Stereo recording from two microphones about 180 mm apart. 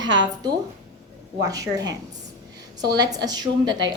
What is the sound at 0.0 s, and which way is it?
A woman's voice, 25° right (ahead or behind).